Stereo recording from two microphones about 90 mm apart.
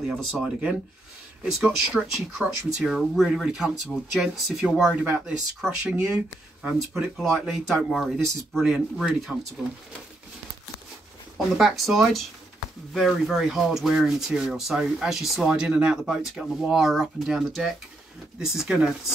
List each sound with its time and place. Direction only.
0.0 s speech: centre (ahead or behind)
4.9 s speech: 15° right (ahead or behind)
11.3 s speech: centre (ahead or behind)